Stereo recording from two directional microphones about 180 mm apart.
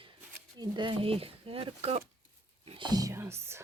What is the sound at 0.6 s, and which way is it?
Speech, 25° right (ahead or behind).